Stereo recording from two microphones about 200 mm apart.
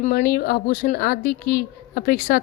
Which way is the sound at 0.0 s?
45° left (ahead or behind).